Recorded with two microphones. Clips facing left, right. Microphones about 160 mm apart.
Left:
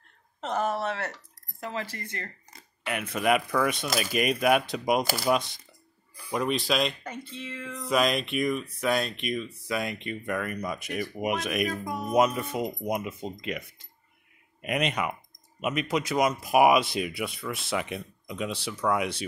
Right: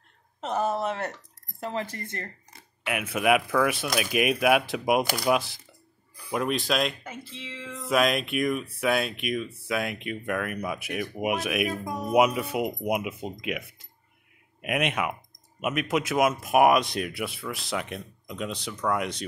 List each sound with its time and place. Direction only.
0.5 s speech: 10° right (ahead or behind)
2.5 s speech: 5° right (ahead or behind)